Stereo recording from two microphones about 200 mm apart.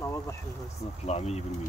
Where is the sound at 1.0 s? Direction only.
35° left (ahead or behind).